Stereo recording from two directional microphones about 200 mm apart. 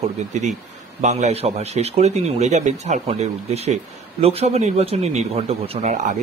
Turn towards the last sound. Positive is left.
turn(degrees=-35)  # may be behind; listen again after turning